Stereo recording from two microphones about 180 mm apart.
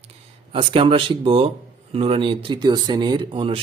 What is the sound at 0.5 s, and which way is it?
Speech, 30° right (ahead or behind).